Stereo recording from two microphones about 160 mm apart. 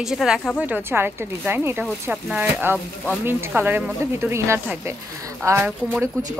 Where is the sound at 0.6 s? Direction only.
10° right (ahead or behind).